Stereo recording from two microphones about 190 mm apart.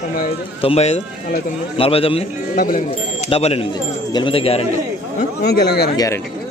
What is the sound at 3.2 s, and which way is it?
A man's voice, 30° left (ahead or behind).